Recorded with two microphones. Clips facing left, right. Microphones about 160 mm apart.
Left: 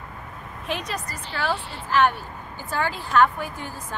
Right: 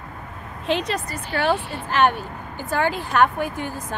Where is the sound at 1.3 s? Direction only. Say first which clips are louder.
Right 6 dB; 60° right (ahead or behind).